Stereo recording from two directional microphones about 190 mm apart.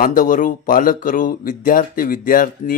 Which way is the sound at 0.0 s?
45° left (ahead or behind).